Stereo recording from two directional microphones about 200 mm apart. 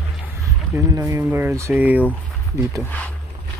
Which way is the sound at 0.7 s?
15° right (ahead or behind).